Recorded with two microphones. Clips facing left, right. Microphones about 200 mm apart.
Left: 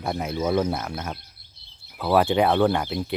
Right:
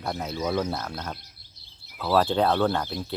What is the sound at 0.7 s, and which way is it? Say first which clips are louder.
Speech: left 3 dB; 10° left (ahead or behind).